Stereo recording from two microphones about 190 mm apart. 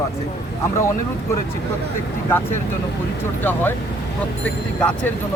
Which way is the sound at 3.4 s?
10° left (ahead or behind).